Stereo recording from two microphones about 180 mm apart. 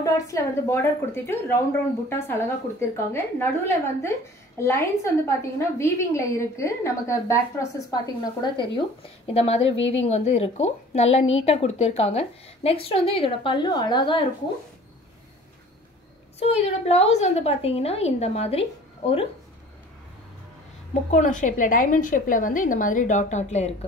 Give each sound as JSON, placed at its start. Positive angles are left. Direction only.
{"t": 0.0, "sound": "a woman's voice", "side_deg": 20}
{"t": 9.3, "sound": "a woman's voice", "side_deg": 35}
{"t": 16.3, "sound": "a woman's voice", "side_deg": 35}
{"t": 21.1, "sound": "a woman's voice", "side_deg": 45}